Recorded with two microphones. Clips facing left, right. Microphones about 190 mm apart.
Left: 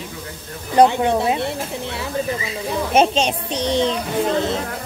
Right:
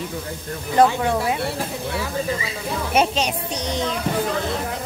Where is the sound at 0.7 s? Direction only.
20° left (ahead or behind).